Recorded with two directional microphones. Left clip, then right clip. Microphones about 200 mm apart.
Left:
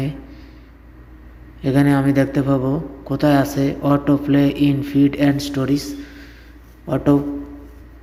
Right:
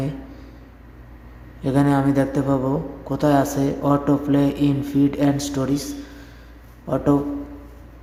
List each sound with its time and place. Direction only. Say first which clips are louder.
1.6 s a man's voice: left 2 dB; 5° left (ahead or behind)